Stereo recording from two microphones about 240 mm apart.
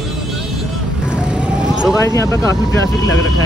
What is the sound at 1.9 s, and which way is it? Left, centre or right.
Speech, centre.